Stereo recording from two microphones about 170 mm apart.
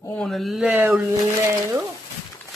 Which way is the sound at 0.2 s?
Centre (ahead or behind).